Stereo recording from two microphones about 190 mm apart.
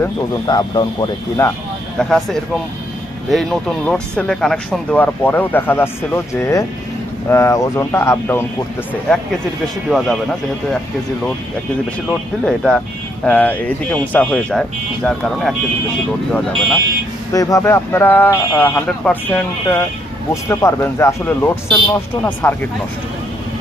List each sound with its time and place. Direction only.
0.0 s speech: 20° left (ahead or behind)
2.0 s speech: centre (ahead or behind)
9.9 s speech: centre (ahead or behind)
12.5 s speech: 5° left (ahead or behind)
17.3 s speech: 20° left (ahead or behind)